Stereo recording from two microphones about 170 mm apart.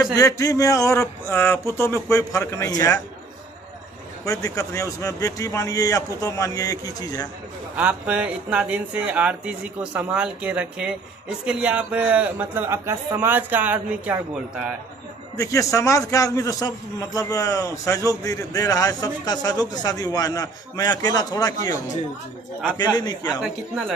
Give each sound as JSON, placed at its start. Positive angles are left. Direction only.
{"t": 0.0, "sound": "a man's voice", "side_deg": 20}
{"t": 4.2, "sound": "a man's voice", "side_deg": 20}
{"t": 7.7, "sound": "speech", "side_deg": -10}
{"t": 15.3, "sound": "a man's voice", "side_deg": 20}